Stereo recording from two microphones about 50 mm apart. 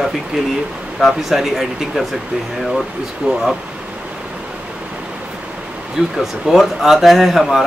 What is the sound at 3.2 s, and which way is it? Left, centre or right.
Speech, right.